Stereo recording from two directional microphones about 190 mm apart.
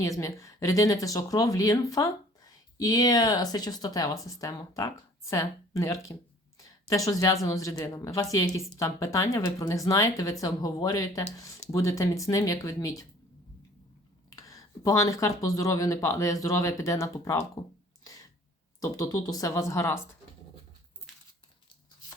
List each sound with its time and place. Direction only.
0.0 s speech: 15° left (ahead or behind)
6.6 s a sound: 20° left (ahead or behind)
7.4 s speech: 15° left (ahead or behind)
14.3 s speech: 20° left (ahead or behind)
18.8 s speech: 20° left (ahead or behind)